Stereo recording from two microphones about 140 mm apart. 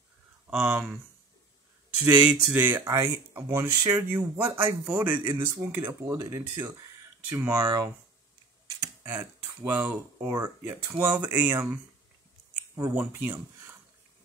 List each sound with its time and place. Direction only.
0.5 s speech: 15° right (ahead or behind)
2.0 s speech: 10° right (ahead or behind)